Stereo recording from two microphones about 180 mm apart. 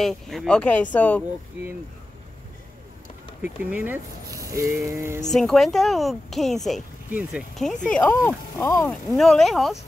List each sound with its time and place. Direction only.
0.0 s a woman's voice: centre (ahead or behind)
3.4 s speech: 10° right (ahead or behind)
5.3 s a woman's voice: centre (ahead or behind)
9.1 s a woman's voice: centre (ahead or behind)